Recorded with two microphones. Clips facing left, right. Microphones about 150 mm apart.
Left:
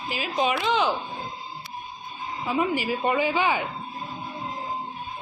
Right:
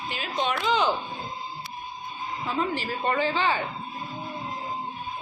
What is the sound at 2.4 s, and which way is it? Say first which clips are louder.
A woman's voice: left 4 dB; 10° left (ahead or behind).